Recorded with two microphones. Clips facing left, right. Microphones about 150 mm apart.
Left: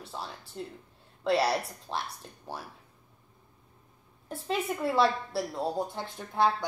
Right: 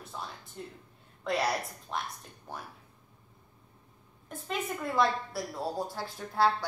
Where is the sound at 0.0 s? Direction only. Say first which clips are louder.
Left 2 dB; 30° left (ahead or behind).